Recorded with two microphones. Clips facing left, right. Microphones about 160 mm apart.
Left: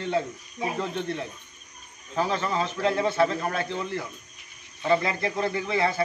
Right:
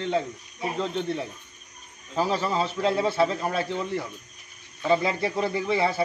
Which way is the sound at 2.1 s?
5° right (ahead or behind).